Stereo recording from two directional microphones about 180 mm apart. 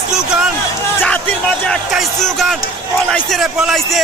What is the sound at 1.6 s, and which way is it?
Music, centre (ahead or behind).